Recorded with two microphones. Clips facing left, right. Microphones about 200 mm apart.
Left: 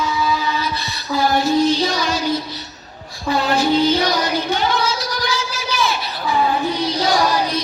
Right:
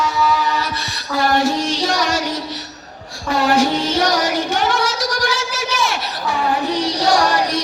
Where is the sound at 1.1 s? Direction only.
80° right.